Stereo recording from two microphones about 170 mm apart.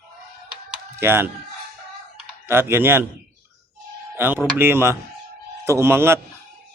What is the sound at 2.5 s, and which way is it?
Speech, 15° right (ahead or behind).